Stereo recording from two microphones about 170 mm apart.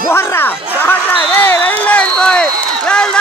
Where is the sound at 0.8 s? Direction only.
10° left (ahead or behind).